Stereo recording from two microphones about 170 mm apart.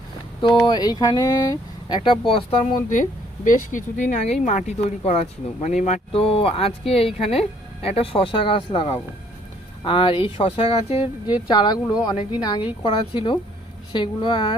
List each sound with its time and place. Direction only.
0.4 s speech: 25° left (ahead or behind)
2.0 s speech: 30° left (ahead or behind)
3.0 s speech: 50° left (ahead or behind); by 14.5 s 25° left (ahead or behind)